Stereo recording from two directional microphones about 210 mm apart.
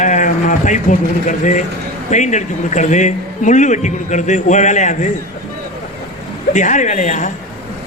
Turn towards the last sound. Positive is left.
turn(degrees=35)  # may be behind; listen again after turning